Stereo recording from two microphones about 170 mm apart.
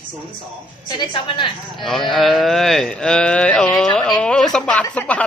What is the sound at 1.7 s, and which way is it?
Speech, centre (ahead or behind).